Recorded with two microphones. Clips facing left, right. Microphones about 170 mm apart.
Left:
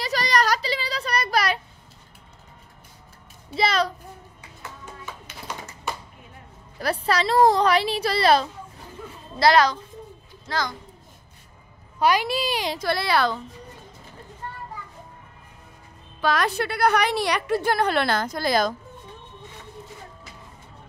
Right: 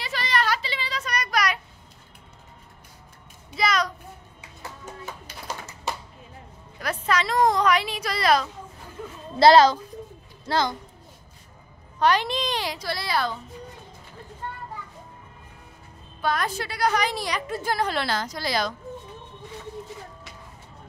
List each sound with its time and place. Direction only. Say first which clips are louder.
0.0 s a sound: left 4 dB; 40° left (ahead or behind)
3.5 s a sound: left 2 dB; 30° left (ahead or behind)
6.8 s a woman's voice: left 2 dB; 35° left (ahead or behind)
9.4 s a woman's voice: right 4 dB; 25° right (ahead or behind)
12.0 s a child's voice: left 1 dB; 10° left (ahead or behind)
12.7 s a woman's voice: left 5 dB; 60° left (ahead or behind); by 13.4 s 75° left (ahead or behind)
16.2 s a woman's voice: left 3 dB; 90° left; by 18.8 s 50° left (ahead or behind)